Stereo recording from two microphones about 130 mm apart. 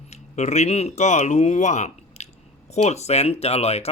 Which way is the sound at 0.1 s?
60° left (ahead or behind).